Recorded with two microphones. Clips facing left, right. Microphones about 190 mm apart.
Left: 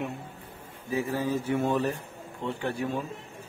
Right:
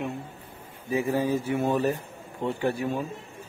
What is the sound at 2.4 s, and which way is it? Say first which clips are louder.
Speech: right 4 dB; 45° right (ahead or behind).